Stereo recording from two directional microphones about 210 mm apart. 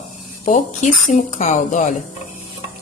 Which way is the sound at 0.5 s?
35° left (ahead or behind).